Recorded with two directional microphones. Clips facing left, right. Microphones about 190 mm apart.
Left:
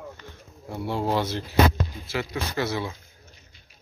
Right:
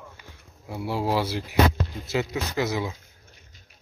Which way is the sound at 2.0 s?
20° right (ahead or behind).